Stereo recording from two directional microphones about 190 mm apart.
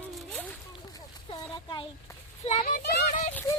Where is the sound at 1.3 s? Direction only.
25° left (ahead or behind).